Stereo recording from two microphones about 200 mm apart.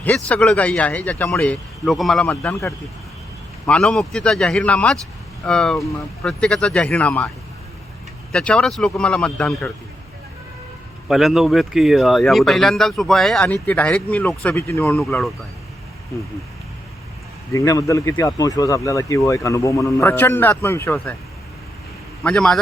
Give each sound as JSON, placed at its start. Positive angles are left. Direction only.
{"t": 0.3, "sound": "speech", "side_deg": 5}
{"t": 8.3, "sound": "speech", "side_deg": 5}
{"t": 11.1, "sound": "speech", "side_deg": 0}
{"t": 17.5, "sound": "speech", "side_deg": 15}
{"t": 22.2, "sound": "speech", "side_deg": 5}